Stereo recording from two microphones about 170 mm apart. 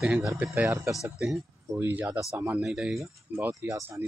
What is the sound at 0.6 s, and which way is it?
Speech, 20° right (ahead or behind).